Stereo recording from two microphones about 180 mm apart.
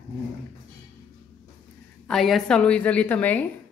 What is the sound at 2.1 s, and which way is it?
A woman's voice, centre (ahead or behind).